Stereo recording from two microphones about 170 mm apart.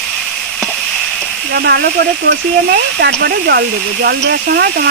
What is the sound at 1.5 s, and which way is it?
Speech, 70° right (ahead or behind).